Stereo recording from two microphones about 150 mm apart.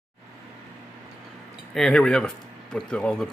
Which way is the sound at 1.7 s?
5° left (ahead or behind).